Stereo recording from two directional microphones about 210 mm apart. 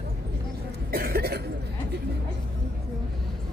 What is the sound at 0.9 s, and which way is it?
Cough, 45° right (ahead or behind).